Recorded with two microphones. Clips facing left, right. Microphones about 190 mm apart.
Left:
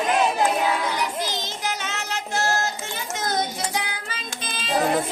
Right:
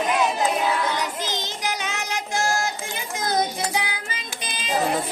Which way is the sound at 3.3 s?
10° right (ahead or behind).